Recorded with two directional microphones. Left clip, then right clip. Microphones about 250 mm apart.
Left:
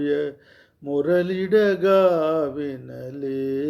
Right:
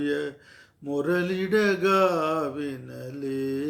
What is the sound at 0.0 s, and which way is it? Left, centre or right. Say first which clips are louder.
Speech: left 5 dB; centre.